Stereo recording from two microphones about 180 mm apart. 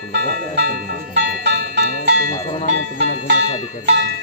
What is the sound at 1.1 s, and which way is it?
Music, 70° right (ahead or behind).